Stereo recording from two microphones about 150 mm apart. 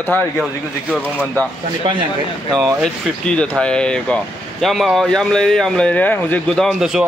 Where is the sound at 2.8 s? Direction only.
5° left (ahead or behind).